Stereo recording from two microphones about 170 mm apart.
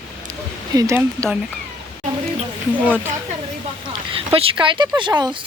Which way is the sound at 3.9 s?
35° right (ahead or behind).